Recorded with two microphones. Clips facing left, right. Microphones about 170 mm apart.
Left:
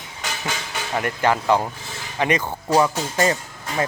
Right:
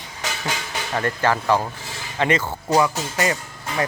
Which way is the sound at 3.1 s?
35° left (ahead or behind).